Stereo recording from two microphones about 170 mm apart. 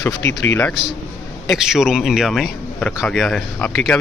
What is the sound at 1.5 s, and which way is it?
Speech, 5° right (ahead or behind).